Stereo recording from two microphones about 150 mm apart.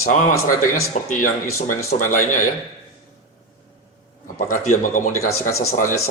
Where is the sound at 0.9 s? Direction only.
50° left (ahead or behind).